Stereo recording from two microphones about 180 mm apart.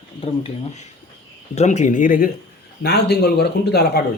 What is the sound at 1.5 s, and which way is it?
Speech, 40° left (ahead or behind).